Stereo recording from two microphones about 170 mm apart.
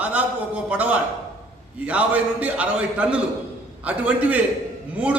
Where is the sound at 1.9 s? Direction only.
10° right (ahead or behind).